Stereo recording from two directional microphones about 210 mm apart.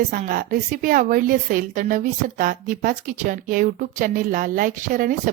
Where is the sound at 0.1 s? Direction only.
40° right (ahead or behind).